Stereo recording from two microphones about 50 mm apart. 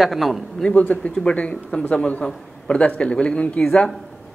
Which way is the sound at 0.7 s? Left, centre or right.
Left.